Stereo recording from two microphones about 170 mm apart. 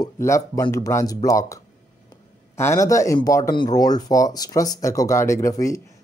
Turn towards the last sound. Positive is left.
turn(degrees=20)  # may be behind; listen again after turning